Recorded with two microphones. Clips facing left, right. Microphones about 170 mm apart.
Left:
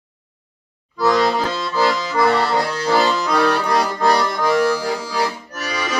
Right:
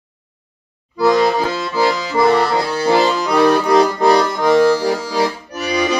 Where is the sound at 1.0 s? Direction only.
15° right (ahead or behind).